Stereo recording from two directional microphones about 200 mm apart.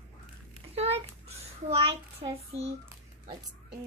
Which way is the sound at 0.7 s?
30° right (ahead or behind).